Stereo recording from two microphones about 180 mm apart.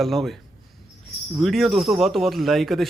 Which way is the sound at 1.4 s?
Centre (ahead or behind).